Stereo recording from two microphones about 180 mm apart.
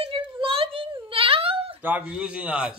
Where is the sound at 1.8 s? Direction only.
5° right (ahead or behind).